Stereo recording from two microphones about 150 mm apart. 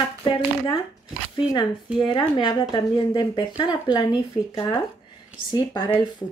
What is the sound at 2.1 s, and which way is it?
Speech, 30° left (ahead or behind).